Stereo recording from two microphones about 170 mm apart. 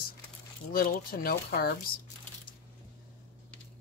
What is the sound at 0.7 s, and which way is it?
Speech, 60° left (ahead or behind).